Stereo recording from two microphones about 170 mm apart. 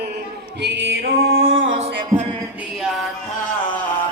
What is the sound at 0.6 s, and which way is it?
Music, 90° right.